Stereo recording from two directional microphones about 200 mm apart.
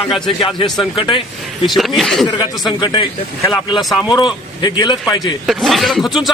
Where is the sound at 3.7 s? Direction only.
Centre (ahead or behind).